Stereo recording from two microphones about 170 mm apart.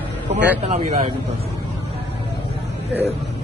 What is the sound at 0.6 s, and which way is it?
Speech, 35° right (ahead or behind).